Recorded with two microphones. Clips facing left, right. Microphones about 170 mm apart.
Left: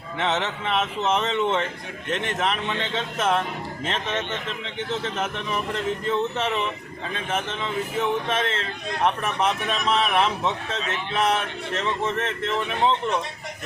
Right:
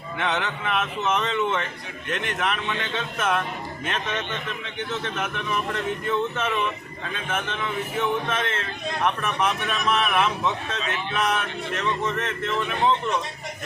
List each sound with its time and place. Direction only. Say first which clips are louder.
0.2 s speech: left 2 dB; 25° left (ahead or behind)